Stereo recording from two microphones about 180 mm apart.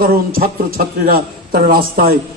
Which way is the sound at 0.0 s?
55° right (ahead or behind).